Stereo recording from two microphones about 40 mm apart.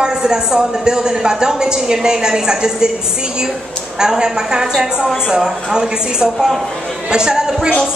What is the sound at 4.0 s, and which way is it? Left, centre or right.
A woman's voice, centre.